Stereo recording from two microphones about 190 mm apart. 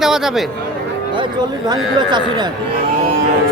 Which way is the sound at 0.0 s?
Centre (ahead or behind).